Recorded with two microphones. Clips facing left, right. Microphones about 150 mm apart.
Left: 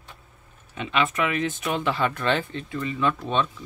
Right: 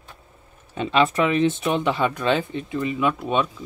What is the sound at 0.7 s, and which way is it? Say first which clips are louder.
Speech: right 5 dB; 35° right (ahead or behind).